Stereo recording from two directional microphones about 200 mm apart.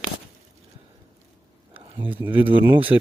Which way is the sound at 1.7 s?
25° right (ahead or behind).